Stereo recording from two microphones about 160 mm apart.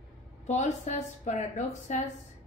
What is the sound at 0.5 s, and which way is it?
A woman's voice, 45° left (ahead or behind).